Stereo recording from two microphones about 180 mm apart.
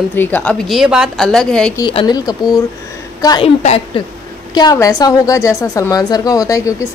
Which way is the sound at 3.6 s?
35° left (ahead or behind).